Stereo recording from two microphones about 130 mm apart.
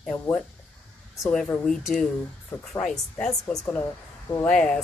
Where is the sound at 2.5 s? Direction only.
15° left (ahead or behind).